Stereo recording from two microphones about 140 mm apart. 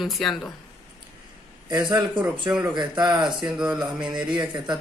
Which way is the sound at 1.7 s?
30° right (ahead or behind).